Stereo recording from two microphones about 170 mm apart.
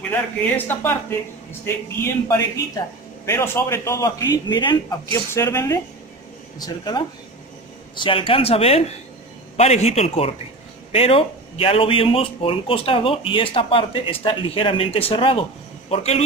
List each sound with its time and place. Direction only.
0.1 s a man's voice: 10° left (ahead or behind)
2.0 s a man's voice: 20° left (ahead or behind); by 16.3 s 40° left (ahead or behind)